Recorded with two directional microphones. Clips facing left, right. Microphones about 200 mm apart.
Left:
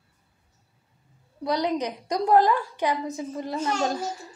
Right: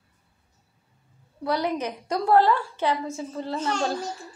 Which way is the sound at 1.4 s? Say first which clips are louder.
Left 1 dB; 15° left (ahead or behind).